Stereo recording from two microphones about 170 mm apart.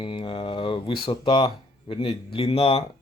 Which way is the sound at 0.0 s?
30° left (ahead or behind).